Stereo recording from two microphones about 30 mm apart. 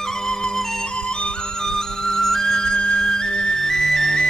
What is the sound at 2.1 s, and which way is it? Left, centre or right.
Flute, centre.